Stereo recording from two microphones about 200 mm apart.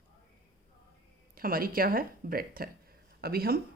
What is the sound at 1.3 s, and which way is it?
Speech, 45° right (ahead or behind).